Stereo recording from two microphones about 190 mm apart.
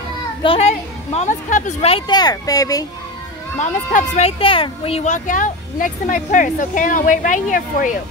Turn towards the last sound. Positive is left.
turn(degrees=45)  # may be behind; listen again after turning